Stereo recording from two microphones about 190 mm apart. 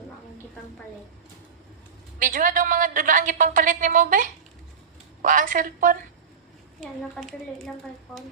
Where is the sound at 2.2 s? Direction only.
45° right (ahead or behind).